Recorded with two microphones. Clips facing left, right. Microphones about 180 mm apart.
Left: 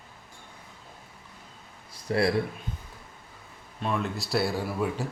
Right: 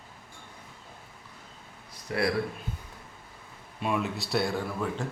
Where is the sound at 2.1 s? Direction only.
30° left (ahead or behind).